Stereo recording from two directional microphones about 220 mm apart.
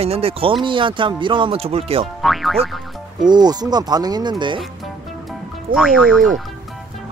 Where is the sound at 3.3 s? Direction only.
20° right (ahead or behind).